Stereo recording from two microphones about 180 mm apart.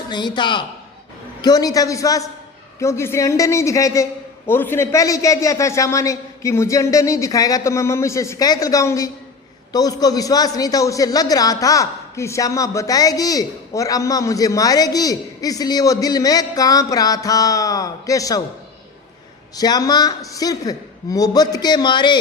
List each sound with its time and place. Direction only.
0.1 s a man's voice: 25° left (ahead or behind)
19.5 s a man's voice: 20° left (ahead or behind)